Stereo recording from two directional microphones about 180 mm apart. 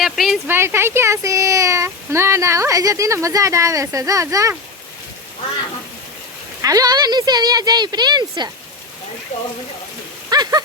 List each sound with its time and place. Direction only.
0.0 s speech: centre (ahead or behind)
0.4 s speech: 10° right (ahead or behind)
6.6 s speech: 20° right (ahead or behind)
10.2 s speech: 20° right (ahead or behind)